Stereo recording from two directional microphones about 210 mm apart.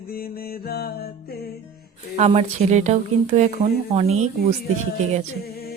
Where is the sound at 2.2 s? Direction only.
30° right (ahead or behind).